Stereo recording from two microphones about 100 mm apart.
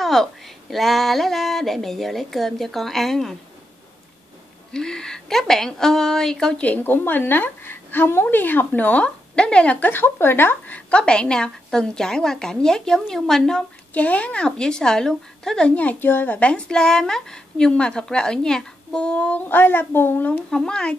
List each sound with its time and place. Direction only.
0.0 s speech: centre (ahead or behind)
4.7 s a woman's voice: 5° left (ahead or behind)
20.4 s a woman's voice: 5° left (ahead or behind)